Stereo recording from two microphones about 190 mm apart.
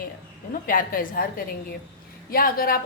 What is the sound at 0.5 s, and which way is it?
A woman's voice, 45° left (ahead or behind).